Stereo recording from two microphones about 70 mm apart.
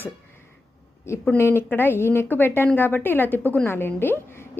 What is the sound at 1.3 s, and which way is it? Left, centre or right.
A woman's voice, left.